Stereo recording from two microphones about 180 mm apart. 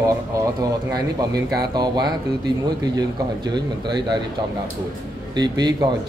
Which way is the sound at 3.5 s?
25° right (ahead or behind).